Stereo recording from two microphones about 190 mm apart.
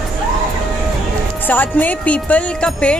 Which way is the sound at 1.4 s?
10° left (ahead or behind).